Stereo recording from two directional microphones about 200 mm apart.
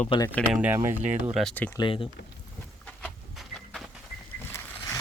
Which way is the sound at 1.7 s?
25° left (ahead or behind).